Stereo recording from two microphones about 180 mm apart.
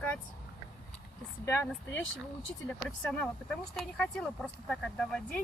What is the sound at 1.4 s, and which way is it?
Speech, 15° left (ahead or behind).